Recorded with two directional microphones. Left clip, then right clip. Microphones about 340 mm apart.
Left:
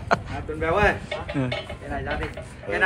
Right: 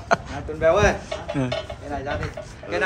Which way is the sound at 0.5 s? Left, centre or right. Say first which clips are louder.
Right 3 dB; right.